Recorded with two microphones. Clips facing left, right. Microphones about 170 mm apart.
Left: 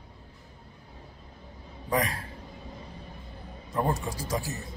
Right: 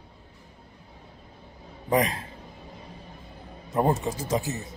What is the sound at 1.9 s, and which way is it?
Speech, 20° right (ahead or behind).